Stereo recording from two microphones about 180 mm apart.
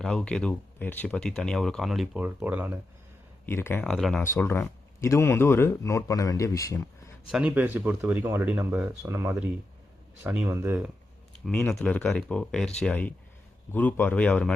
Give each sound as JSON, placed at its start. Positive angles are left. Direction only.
{"t": 0.0, "sound": "speech", "side_deg": 5}
{"t": 3.4, "sound": "speech", "side_deg": 10}
{"t": 4.2, "sound": "speech", "side_deg": 15}
{"t": 7.3, "sound": "speech", "side_deg": -5}
{"t": 11.4, "sound": "speech", "side_deg": 5}